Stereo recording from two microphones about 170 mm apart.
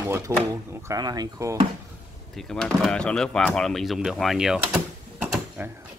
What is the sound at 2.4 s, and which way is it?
Speech, 5° left (ahead or behind).